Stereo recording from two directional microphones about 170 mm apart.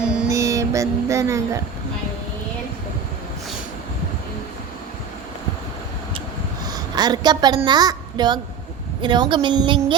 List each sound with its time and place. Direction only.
0.0 s music: 5° right (ahead or behind)
0.3 s music: 20° right (ahead or behind)
6.7 s a woman's voice: 25° right (ahead or behind)